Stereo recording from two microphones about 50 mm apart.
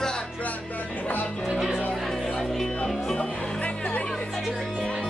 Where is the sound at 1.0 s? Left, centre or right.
Left.